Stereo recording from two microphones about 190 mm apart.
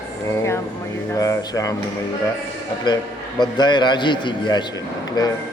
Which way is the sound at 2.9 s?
25° left (ahead or behind).